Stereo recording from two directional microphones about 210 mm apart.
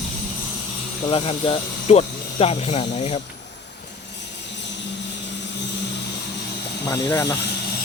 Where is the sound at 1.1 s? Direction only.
25° left (ahead or behind).